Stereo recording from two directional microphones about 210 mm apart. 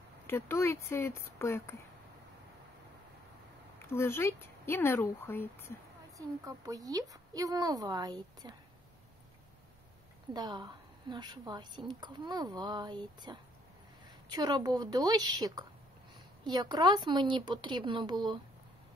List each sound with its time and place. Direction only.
0.3 s speech: 10° left (ahead or behind)
3.8 s speech: 10° left (ahead or behind)
6.1 s a woman's voice: 15° right (ahead or behind)
10.3 s a woman's voice: 20° right (ahead or behind)